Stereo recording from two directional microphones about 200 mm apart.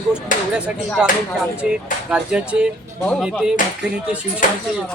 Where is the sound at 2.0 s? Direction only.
5° right (ahead or behind).